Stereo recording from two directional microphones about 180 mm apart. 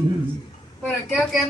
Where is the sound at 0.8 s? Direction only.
Centre (ahead or behind).